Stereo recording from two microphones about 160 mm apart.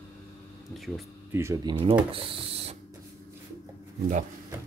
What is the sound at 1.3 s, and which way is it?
Speech, 20° right (ahead or behind).